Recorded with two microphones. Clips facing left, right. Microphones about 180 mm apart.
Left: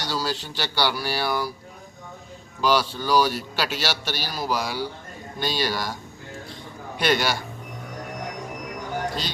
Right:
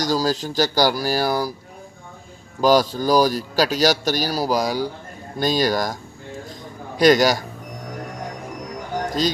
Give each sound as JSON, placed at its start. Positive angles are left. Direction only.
{"t": 0.0, "sound": "a man's voice", "side_deg": -40}
{"t": 2.6, "sound": "a man's voice", "side_deg": -40}
{"t": 9.0, "sound": "a sound", "side_deg": -40}